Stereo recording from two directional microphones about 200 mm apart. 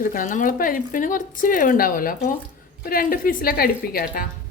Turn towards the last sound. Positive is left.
turn(degrees=50)  # may be behind; listen again after turning